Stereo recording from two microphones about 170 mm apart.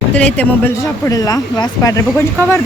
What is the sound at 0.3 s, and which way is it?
A woman's voice, 15° left (ahead or behind).